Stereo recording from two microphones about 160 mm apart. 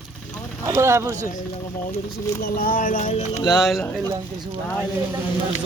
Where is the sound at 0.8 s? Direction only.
15° right (ahead or behind).